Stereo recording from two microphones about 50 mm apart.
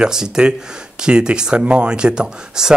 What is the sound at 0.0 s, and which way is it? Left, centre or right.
Speech, centre.